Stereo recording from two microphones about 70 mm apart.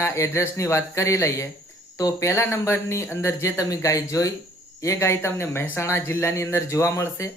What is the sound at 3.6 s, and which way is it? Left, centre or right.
Speech, left.